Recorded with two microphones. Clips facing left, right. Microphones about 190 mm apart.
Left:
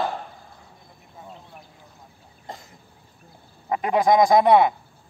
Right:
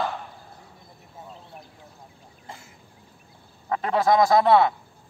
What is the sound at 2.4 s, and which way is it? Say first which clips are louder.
Cough: left 4 dB; 35° left (ahead or behind).